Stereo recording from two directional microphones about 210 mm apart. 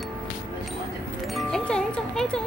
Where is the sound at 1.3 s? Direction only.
Centre (ahead or behind).